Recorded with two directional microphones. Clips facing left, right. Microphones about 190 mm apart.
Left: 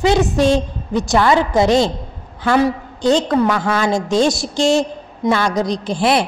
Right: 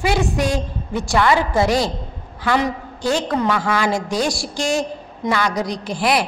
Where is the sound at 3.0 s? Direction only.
20° left (ahead or behind).